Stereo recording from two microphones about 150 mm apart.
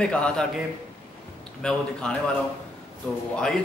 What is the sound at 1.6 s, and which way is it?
Speech, 5° left (ahead or behind).